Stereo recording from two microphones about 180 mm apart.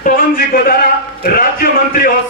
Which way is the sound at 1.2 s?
55° left (ahead or behind).